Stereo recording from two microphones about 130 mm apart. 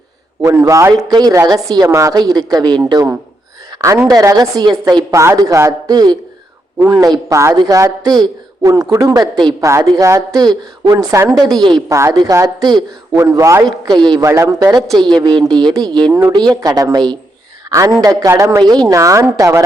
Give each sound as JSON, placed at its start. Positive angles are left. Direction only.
{"t": 0.4, "sound": "a woman's voice", "side_deg": -25}
{"t": 3.7, "sound": "a sound", "side_deg": -35}
{"t": 4.1, "sound": "a woman's voice", "side_deg": -25}
{"t": 9.6, "sound": "a woman's voice", "side_deg": -25}
{"t": 11.1, "sound": "a woman's voice", "side_deg": -20}
{"t": 11.6, "sound": "a woman's voice", "side_deg": -35}